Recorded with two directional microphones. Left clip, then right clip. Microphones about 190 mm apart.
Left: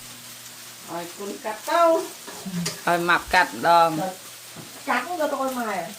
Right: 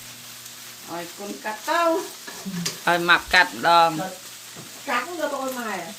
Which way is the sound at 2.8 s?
Centre (ahead or behind).